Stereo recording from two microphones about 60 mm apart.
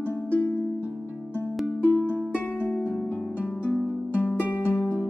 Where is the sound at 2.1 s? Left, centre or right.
Left.